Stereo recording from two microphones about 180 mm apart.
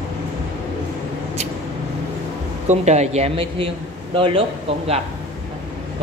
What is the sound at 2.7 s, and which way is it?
A man's voice, 40° right (ahead or behind).